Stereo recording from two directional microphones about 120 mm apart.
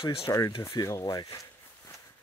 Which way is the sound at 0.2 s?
25° left (ahead or behind).